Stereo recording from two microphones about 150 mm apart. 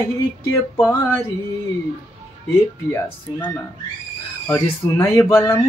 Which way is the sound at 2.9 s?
15° left (ahead or behind).